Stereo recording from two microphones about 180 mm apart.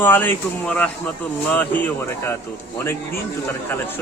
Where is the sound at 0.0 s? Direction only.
10° left (ahead or behind).